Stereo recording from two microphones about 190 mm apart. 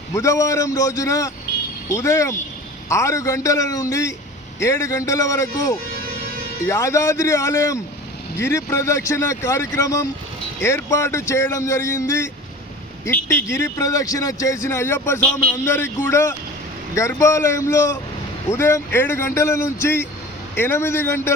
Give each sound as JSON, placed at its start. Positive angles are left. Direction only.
{"t": 0.1, "sound": "speech", "side_deg": 15}